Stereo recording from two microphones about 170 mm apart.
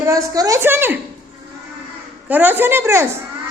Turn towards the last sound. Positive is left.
turn(degrees=-15)  # may be behind; listen again after turning